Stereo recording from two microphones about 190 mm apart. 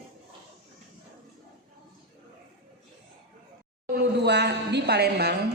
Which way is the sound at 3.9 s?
60° right (ahead or behind).